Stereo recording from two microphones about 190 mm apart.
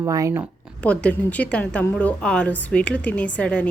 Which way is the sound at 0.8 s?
5° left (ahead or behind).